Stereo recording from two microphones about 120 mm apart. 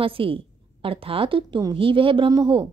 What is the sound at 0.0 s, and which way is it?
A woman's voice, 50° right (ahead or behind).